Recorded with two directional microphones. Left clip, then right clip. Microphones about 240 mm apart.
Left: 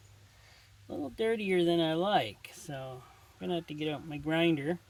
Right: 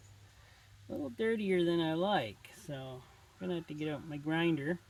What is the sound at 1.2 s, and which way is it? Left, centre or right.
Speech, left.